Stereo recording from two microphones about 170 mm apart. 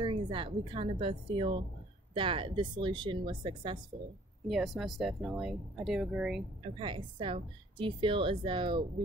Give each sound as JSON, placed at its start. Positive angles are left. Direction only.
{"t": 0.0, "sound": "a woman's voice", "side_deg": -30}
{"t": 4.5, "sound": "speech", "side_deg": 0}
{"t": 6.6, "sound": "a woman's voice", "side_deg": -30}